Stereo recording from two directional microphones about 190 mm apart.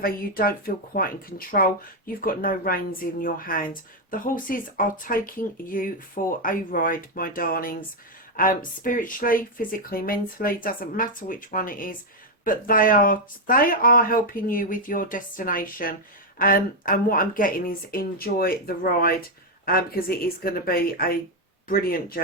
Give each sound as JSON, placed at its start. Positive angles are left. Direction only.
{"t": 0.0, "sound": "speech", "side_deg": 50}